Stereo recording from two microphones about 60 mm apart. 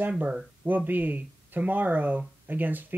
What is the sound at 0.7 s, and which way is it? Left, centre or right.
Speech, right.